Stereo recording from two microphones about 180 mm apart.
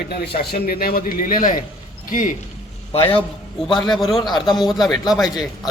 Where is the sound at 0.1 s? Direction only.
60° left (ahead or behind).